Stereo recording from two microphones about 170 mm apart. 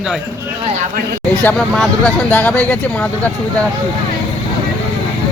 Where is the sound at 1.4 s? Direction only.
5° left (ahead or behind).